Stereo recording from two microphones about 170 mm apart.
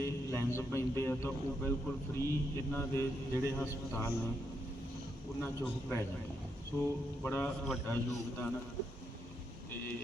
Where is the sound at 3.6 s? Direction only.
15° left (ahead or behind).